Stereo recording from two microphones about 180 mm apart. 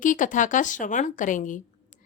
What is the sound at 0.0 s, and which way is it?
Speech, 45° left (ahead or behind).